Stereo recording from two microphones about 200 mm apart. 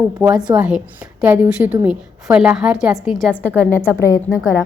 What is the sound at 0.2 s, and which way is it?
Speech, 20° right (ahead or behind).